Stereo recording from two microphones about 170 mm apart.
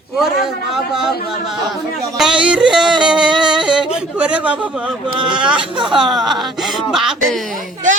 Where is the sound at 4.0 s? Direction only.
5° right (ahead or behind).